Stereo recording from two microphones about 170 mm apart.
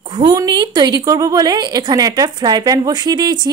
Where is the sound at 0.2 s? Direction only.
25° right (ahead or behind).